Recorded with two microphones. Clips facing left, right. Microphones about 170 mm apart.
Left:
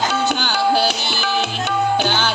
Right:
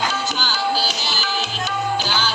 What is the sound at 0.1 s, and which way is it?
Music, 60° left (ahead or behind).